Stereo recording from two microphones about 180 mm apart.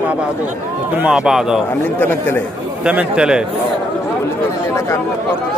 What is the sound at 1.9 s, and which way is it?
Speech, 10° left (ahead or behind).